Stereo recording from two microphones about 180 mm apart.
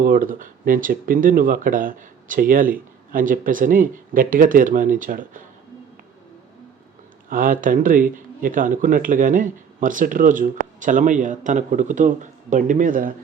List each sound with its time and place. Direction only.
0.0 s speech: 50° right (ahead or behind)
7.3 s speech: 50° right (ahead or behind)